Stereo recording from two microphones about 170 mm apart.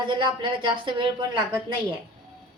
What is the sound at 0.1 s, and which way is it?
A woman's voice, 30° right (ahead or behind).